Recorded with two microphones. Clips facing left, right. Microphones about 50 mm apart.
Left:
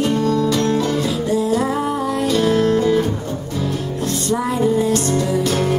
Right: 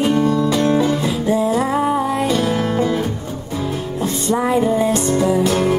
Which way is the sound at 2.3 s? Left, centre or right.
Centre.